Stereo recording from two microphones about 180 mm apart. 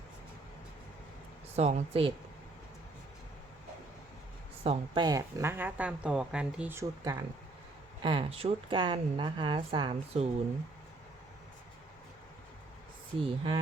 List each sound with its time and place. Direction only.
1.5 s speech: 35° right (ahead or behind)
4.6 s speech: 35° right (ahead or behind)
5.0 s speech: 15° right (ahead or behind)
8.0 s speech: 30° right (ahead or behind)
13.1 s speech: 30° right (ahead or behind)